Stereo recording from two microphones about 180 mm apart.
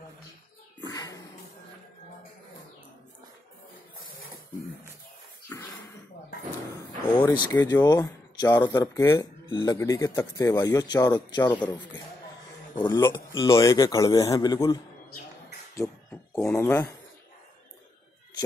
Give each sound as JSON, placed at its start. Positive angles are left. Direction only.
{"t": 0.7, "sound": "a sound", "side_deg": 20}
{"t": 5.5, "sound": "speech", "side_deg": 10}
{"t": 7.2, "sound": "speech", "side_deg": 25}